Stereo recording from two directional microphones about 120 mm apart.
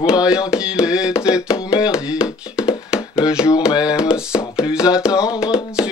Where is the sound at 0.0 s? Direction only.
5° right (ahead or behind).